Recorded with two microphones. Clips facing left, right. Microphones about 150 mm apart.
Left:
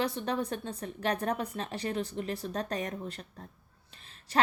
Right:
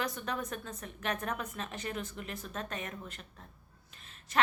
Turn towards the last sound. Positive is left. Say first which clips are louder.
# left 2 dB
turn(degrees=35)  # may be behind; listen again after turning